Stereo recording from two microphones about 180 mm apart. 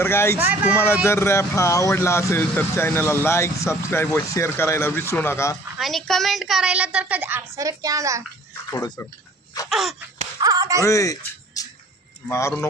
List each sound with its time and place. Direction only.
0.0 s speech: 15° left (ahead or behind)
0.4 s a woman's voice: 10° right (ahead or behind)
1.0 s speech: 15° left (ahead or behind)
5.7 s a woman's voice: centre (ahead or behind); by 8.2 s 20° right (ahead or behind)
8.7 s speech: 20° left (ahead or behind)
9.6 s wail: centre (ahead or behind)
10.4 s speech: 20° right (ahead or behind)
10.8 s music: 20° left (ahead or behind)
12.3 s speech: 15° left (ahead or behind)